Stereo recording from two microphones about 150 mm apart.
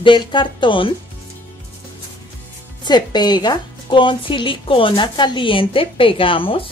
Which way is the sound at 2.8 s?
30° left (ahead or behind).